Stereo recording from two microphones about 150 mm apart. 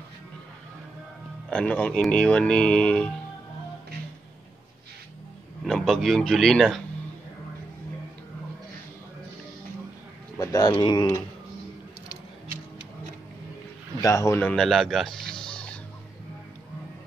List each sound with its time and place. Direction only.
1.5 s speech: 5° left (ahead or behind)
5.6 s a man's voice: 5° left (ahead or behind)
10.4 s speech: 20° left (ahead or behind)
14.0 s speech: 20° left (ahead or behind)
14.5 s speech: 5° left (ahead or behind)